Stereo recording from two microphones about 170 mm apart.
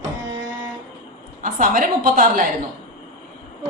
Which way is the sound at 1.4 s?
50° right (ahead or behind).